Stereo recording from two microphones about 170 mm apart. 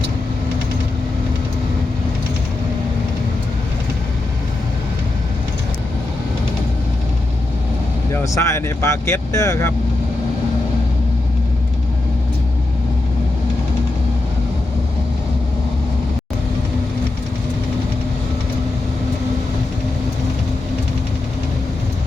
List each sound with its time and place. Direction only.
8.1 s speech: 15° left (ahead or behind)